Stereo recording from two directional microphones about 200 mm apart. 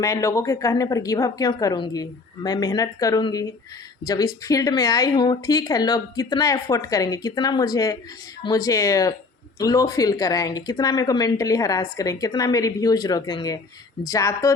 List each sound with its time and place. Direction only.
0.0 s speech: 15° left (ahead or behind)